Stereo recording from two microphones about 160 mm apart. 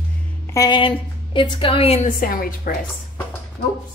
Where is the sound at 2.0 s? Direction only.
65° left (ahead or behind).